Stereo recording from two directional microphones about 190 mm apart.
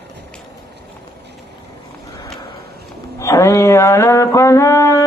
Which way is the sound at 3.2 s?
15° left (ahead or behind).